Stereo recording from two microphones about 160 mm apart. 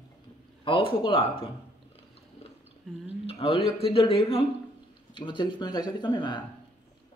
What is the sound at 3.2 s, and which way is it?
Speech, 40° left (ahead or behind).